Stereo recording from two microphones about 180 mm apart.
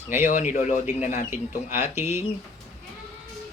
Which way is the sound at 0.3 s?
45° left (ahead or behind).